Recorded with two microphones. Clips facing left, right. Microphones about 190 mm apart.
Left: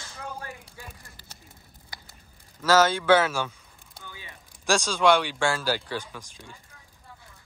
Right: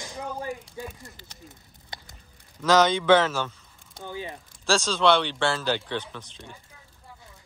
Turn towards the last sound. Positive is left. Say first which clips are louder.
# right 2 dB
turn(degrees=10)  # may be behind; listen again after turning